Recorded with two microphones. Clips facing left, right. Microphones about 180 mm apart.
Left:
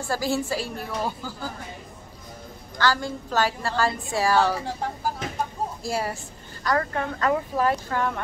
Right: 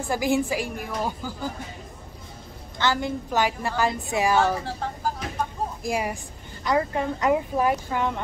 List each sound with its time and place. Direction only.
0.0 s speech: 15° right (ahead or behind)
2.8 s a woman's voice: 20° right (ahead or behind)
5.8 s speech: 15° right (ahead or behind)